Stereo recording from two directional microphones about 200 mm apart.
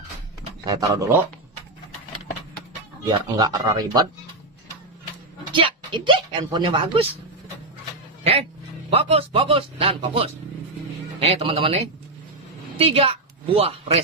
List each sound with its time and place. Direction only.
0.7 s speech: 15° right (ahead or behind)
3.1 s speech: 20° right (ahead or behind)
5.5 s speech: 25° right (ahead or behind)
8.9 s a woman's voice: 30° right (ahead or behind)